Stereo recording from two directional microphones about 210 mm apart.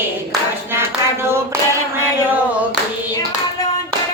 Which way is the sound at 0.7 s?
10° right (ahead or behind).